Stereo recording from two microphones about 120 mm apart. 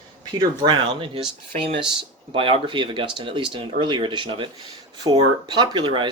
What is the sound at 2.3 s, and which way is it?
Speech, 45° right (ahead or behind).